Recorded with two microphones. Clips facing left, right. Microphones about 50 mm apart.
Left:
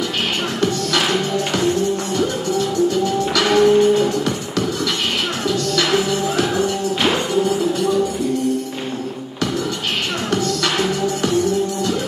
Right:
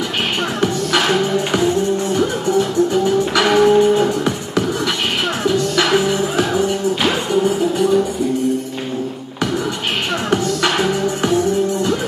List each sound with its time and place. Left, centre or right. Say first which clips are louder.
0.6 s music: right 2 dB; centre
2.9 s music: right 3 dB; centre
10.3 s music: right 2 dB; centre